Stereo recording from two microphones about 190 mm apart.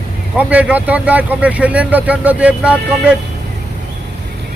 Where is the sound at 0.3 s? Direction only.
5° right (ahead or behind).